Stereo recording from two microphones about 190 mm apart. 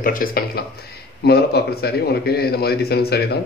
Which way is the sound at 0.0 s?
50° left (ahead or behind).